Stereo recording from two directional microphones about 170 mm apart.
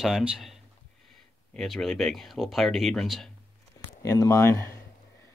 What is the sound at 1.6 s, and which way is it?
Speech, 5° left (ahead or behind).